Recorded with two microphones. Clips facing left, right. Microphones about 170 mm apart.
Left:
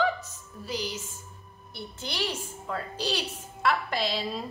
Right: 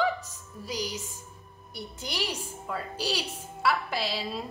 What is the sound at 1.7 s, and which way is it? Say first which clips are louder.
A woman's voice: even; 10° right (ahead or behind).